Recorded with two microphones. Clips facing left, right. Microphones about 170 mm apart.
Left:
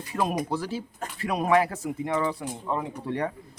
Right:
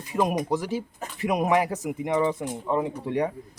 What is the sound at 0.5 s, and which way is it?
Speech, 15° right (ahead or behind).